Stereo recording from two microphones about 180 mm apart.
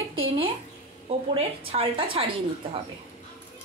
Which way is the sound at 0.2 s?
30° right (ahead or behind).